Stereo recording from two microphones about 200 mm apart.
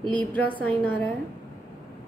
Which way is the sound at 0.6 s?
5° left (ahead or behind).